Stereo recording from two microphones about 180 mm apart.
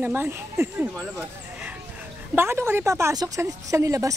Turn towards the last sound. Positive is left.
turn(degrees=-20)  # may be behind; listen again after turning